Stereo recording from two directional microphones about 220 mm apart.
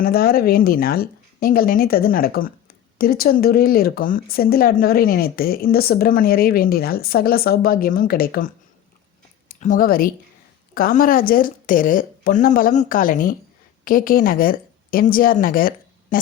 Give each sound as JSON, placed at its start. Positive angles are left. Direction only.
{"t": 0.0, "sound": "speech", "side_deg": 45}
{"t": 9.6, "sound": "speech", "side_deg": 35}